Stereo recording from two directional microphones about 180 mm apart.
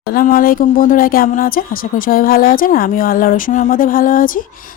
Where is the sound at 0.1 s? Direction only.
55° left (ahead or behind).